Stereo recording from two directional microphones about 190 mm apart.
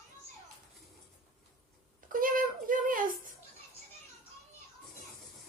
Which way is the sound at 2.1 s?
45° right (ahead or behind).